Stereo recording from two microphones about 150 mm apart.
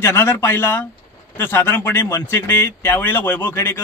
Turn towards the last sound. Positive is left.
turn(degrees=15)  # may be behind; listen again after turning